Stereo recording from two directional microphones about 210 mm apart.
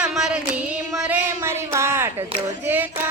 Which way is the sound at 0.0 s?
5° right (ahead or behind).